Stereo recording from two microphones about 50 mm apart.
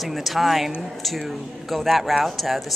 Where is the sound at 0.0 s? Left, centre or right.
Centre.